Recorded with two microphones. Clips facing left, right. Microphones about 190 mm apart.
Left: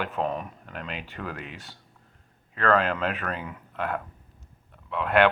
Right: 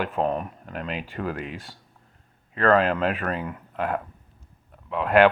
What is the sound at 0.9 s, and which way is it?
Speech, 40° right (ahead or behind).